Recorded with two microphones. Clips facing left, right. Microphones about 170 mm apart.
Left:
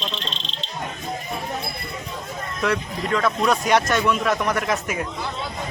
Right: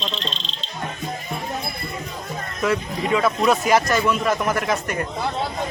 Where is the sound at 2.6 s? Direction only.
5° right (ahead or behind).